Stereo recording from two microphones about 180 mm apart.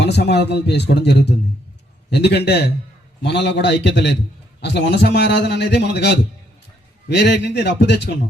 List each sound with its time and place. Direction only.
0.0 s a man's voice: 70° left (ahead or behind)